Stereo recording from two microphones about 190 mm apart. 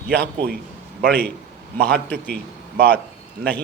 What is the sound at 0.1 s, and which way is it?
Speech, 60° right (ahead or behind).